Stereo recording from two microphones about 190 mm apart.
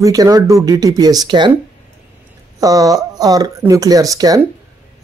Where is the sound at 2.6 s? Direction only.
20° right (ahead or behind).